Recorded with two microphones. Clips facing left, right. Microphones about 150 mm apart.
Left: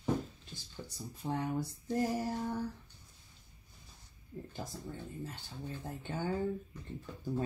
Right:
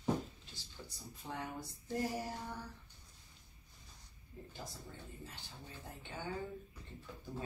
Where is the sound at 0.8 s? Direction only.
45° left (ahead or behind).